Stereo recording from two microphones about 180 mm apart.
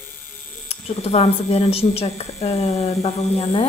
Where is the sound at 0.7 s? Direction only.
35° left (ahead or behind).